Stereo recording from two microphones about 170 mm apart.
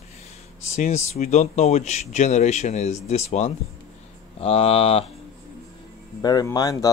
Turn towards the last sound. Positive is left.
turn(degrees=20)  # may be behind; listen again after turning